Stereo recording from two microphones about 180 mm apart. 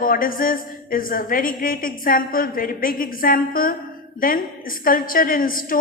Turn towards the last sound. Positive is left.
turn(degrees=50)  # may be behind; listen again after turning